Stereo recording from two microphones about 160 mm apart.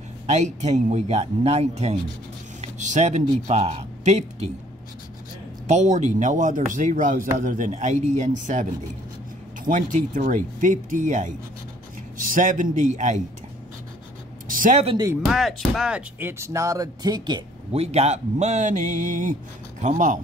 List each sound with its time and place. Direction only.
0.3 s a man's voice: 45° right (ahead or behind)
5.7 s a man's voice: 45° right (ahead or behind)
9.7 s a man's voice: 55° right (ahead or behind)
14.5 s a man's voice: 55° right (ahead or behind)
15.2 s speech: centre (ahead or behind); by 17.4 s 25° right (ahead or behind)
17.7 s a man's voice: 40° right (ahead or behind)